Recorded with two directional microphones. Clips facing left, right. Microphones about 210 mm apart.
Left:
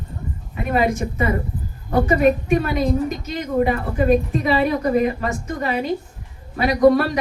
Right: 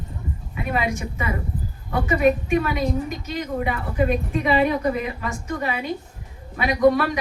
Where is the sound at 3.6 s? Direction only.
40° left (ahead or behind).